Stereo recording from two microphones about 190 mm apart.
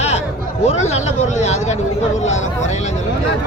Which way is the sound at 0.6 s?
35° left (ahead or behind).